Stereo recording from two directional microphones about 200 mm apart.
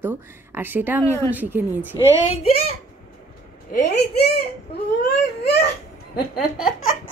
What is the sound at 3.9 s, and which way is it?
Speech, 55° left (ahead or behind).